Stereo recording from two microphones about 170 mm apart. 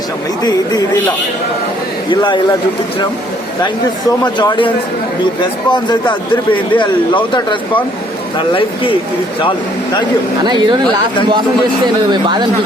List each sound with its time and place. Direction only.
0.4 s speech: 25° left (ahead or behind)
2.0 s speech: 30° left (ahead or behind)
4.2 s speech: 25° left (ahead or behind)
8.4 s speech: 30° left (ahead or behind)
10.4 s a woman's voice: 25° right (ahead or behind)
12.1 s a woman's voice: 25° right (ahead or behind)